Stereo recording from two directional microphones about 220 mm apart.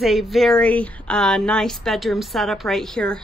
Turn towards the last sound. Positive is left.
turn(degrees=5)  # may be behind; listen again after turning